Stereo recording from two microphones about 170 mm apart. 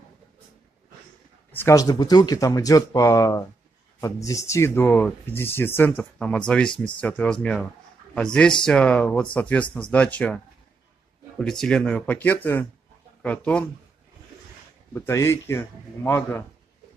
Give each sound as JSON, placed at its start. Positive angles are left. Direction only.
{"t": 1.5, "sound": "speech", "side_deg": 15}
{"t": 15.0, "sound": "speech", "side_deg": 15}